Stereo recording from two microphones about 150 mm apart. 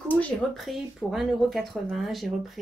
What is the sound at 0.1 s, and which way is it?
Speech, 5° left (ahead or behind).